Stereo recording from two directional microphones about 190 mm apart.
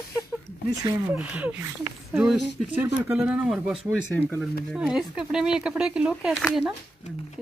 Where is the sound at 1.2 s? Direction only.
5° right (ahead or behind).